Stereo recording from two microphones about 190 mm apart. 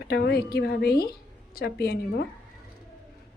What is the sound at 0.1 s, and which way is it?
A woman's voice, 55° left (ahead or behind).